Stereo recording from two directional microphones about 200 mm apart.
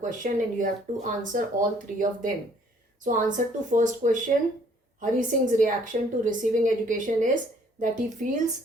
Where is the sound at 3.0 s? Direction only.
40° right (ahead or behind).